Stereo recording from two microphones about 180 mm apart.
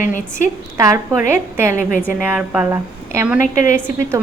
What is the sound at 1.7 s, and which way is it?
Speech, 45° left (ahead or behind).